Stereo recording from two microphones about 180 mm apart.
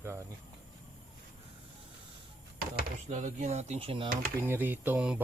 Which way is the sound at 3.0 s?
40° right (ahead or behind).